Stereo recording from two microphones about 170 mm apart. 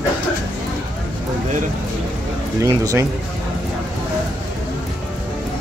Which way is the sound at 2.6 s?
20° right (ahead or behind).